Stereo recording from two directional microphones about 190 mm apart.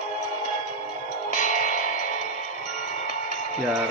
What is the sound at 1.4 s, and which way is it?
Music, 40° left (ahead or behind).